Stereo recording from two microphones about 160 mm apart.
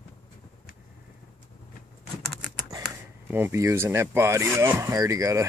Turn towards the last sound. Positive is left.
turn(degrees=-20)  # may be behind; listen again after turning